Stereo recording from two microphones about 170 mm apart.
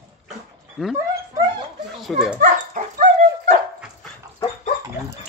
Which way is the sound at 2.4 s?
50° right (ahead or behind).